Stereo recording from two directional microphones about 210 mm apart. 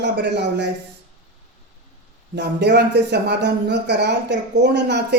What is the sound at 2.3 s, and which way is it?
Speech, 55° right (ahead or behind).